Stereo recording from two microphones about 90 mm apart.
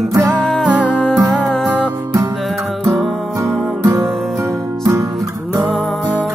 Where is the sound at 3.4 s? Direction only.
30° right (ahead or behind).